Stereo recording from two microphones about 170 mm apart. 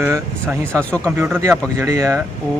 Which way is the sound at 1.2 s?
15° right (ahead or behind).